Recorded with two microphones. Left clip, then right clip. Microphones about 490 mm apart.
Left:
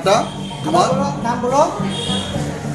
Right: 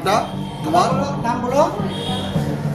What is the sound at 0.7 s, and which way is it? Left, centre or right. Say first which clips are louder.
Speech: left 1 dB; right.